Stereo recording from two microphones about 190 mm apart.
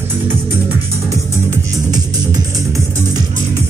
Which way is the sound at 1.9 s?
20° right (ahead or behind).